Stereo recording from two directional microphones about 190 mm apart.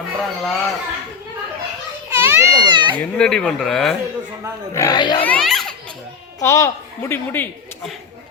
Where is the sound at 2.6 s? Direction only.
25° right (ahead or behind).